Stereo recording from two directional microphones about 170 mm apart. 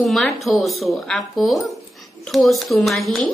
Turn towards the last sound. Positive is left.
turn(degrees=0)  # may be behind; listen again after turning